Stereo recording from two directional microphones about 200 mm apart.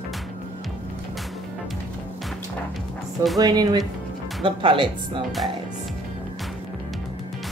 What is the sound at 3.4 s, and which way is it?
Speech, 20° right (ahead or behind).